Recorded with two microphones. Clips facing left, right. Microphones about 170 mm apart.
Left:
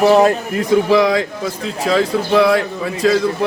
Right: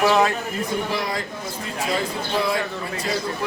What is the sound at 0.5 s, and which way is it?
A man's voice, 90° left.